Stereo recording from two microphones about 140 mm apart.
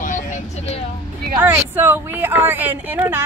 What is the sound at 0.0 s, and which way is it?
Vehicle, 65° left (ahead or behind).